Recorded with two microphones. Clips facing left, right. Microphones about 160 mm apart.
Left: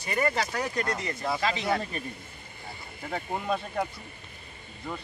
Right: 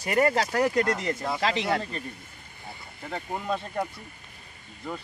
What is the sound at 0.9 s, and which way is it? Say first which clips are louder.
Speech: right 2 dB; centre (ahead or behind).